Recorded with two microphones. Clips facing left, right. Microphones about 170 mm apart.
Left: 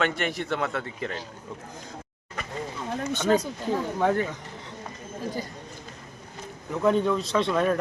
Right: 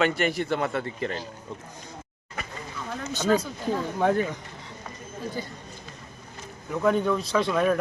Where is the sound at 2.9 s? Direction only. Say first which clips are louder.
Left 1 dB; 25° left (ahead or behind).